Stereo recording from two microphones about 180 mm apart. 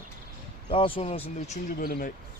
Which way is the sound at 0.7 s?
30° left (ahead or behind).